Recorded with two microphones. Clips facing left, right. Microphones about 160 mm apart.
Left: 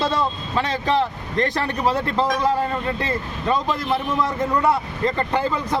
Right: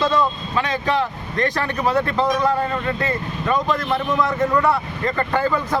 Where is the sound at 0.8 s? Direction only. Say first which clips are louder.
Left 1 dB; 30° left (ahead or behind).